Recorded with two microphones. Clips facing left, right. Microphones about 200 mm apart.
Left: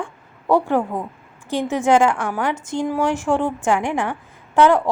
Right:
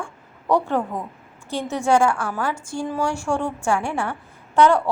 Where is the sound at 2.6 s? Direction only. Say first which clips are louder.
Left 4 dB; 10° right (ahead or behind).